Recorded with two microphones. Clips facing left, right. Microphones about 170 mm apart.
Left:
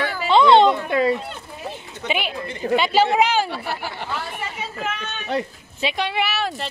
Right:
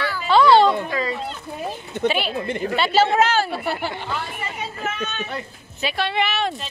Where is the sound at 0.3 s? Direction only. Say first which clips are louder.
Left 1 dB; 20° left (ahead or behind).